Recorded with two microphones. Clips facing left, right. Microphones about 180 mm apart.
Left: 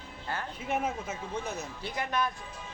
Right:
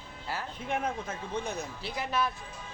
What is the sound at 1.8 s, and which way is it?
Speech, 5° right (ahead or behind).